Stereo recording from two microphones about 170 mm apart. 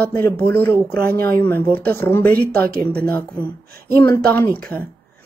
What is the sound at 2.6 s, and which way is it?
Speech, 65° right (ahead or behind).